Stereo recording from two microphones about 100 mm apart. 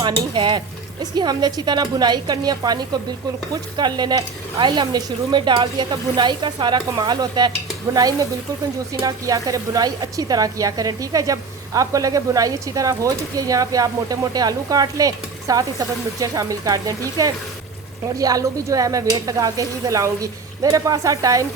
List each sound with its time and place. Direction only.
0.0 s speech: 55° right (ahead or behind)
1.1 s a woman's voice: 45° right (ahead or behind)